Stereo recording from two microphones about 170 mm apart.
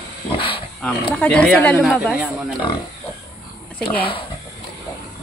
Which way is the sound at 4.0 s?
30° left (ahead or behind).